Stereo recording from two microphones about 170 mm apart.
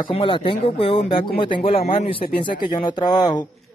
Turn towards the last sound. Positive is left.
turn(degrees=25)  # may be behind; listen again after turning